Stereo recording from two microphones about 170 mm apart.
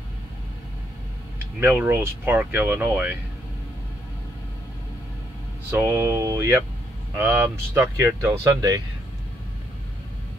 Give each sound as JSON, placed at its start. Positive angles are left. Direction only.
{"t": 1.6, "sound": "speech", "side_deg": -10}
{"t": 5.7, "sound": "speech", "side_deg": -15}